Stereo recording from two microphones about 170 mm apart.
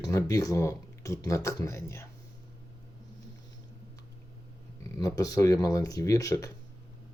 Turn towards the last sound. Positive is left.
turn(degrees=20)  # may be behind; listen again after turning